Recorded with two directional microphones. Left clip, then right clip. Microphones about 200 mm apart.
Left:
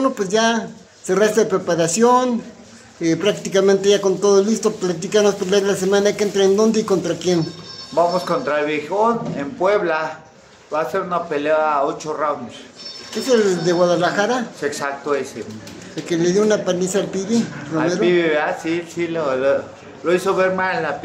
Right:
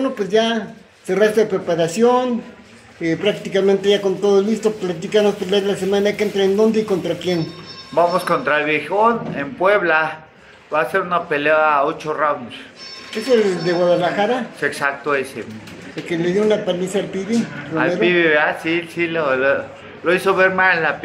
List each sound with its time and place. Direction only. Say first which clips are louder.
0.0 s speech: even; centre (ahead or behind)
7.9 s speech: right 1 dB; 5° right (ahead or behind)
16.3 s speech: right 2 dB; centre (ahead or behind)